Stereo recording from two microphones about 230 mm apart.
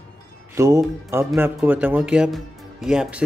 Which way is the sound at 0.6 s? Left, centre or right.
Centre.